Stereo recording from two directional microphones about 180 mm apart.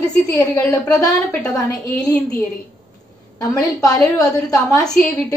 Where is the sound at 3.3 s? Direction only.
20° left (ahead or behind).